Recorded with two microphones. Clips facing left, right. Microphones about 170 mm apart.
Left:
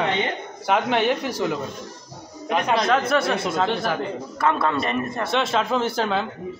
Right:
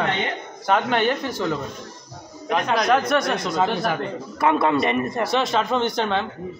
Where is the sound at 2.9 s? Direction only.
5° left (ahead or behind).